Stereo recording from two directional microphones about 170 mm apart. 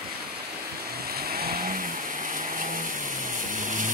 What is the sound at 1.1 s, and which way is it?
Vehicle, 65° right (ahead or behind).